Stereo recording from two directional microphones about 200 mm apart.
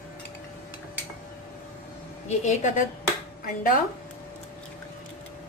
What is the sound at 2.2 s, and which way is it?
Speech, 35° left (ahead or behind).